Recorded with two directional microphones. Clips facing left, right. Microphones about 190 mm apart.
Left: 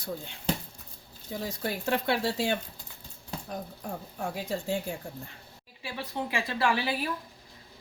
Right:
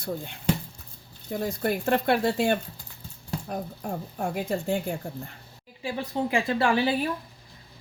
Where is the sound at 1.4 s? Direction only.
55° right (ahead or behind).